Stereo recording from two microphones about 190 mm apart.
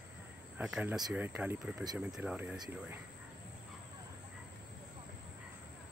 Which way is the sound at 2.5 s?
20° right (ahead or behind).